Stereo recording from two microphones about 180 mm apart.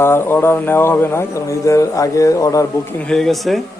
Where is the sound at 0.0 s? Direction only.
15° left (ahead or behind).